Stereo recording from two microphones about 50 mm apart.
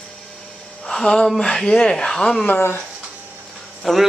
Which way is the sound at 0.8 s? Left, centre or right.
Centre.